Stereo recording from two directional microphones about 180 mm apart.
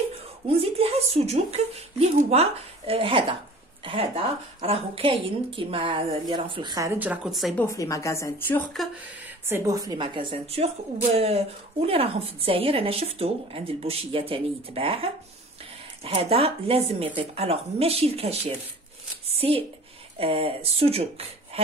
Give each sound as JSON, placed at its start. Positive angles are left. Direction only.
{"t": 0.5, "sound": "a woman's voice", "side_deg": -35}
{"t": 7.6, "sound": "a woman's voice", "side_deg": 15}
{"t": 9.5, "sound": "a woman's voice", "side_deg": -20}